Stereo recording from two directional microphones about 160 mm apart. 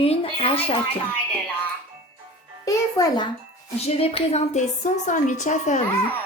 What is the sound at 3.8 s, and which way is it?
A woman's voice, 40° left (ahead or behind).